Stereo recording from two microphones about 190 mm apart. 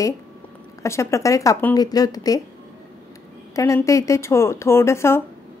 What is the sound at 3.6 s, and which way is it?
A woman's voice, 15° left (ahead or behind).